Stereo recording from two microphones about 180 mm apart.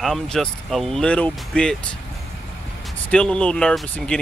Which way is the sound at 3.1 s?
5° left (ahead or behind).